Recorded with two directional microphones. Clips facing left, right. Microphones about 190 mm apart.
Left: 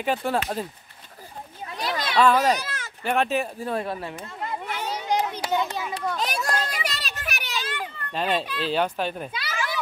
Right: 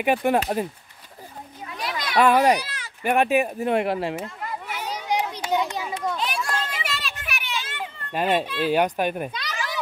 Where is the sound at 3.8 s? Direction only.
85° right.